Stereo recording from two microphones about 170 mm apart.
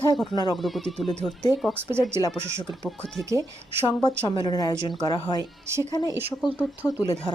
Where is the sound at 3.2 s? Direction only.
15° right (ahead or behind).